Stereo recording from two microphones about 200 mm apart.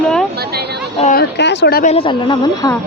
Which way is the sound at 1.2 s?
60° left (ahead or behind).